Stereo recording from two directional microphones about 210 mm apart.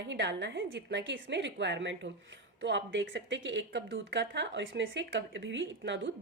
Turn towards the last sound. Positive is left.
turn(degrees=-60)  # may be behind; listen again after turning